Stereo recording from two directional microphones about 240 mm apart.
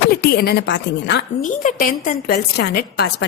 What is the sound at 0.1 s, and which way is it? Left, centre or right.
A woman's voice, left.